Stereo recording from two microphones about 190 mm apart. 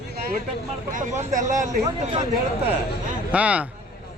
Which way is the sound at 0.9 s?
40° right (ahead or behind).